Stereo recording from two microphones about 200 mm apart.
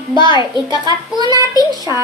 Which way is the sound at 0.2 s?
20° left (ahead or behind).